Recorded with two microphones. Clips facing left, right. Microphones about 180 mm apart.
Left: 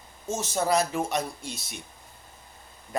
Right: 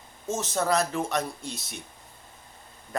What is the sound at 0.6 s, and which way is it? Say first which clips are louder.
Speech: left 1 dB; 15° left (ahead or behind).